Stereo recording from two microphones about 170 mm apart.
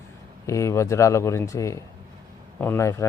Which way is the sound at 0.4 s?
15° left (ahead or behind).